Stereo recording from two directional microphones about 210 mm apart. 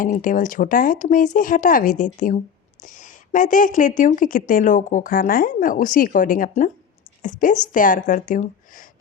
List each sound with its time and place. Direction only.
0.0 s speech: 40° left (ahead or behind)